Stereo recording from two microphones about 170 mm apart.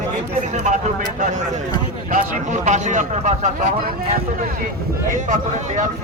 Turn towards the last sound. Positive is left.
turn(degrees=-45)  # may be behind; listen again after turning